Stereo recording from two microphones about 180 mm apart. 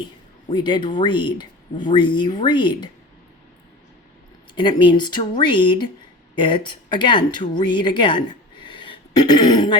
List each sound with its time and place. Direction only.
0.5 s speech: 25° left (ahead or behind)
4.5 s speech: 25° left (ahead or behind)